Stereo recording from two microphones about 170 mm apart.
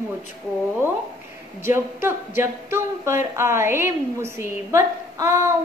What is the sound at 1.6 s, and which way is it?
A capella, 15° right (ahead or behind).